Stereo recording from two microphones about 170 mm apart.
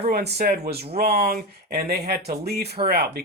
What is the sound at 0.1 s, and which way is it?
Speech, 75° right (ahead or behind).